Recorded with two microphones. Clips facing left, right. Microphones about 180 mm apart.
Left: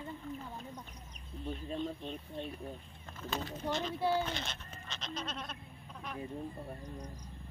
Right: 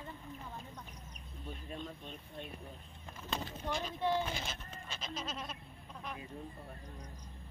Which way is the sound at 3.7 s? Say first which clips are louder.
Left 3 dB; 10° right (ahead or behind).